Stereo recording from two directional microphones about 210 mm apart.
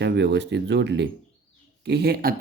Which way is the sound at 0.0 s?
55° right (ahead or behind).